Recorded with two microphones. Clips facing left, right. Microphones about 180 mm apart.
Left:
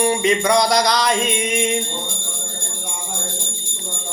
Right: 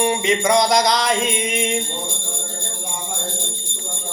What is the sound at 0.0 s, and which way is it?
Music, 20° right (ahead or behind).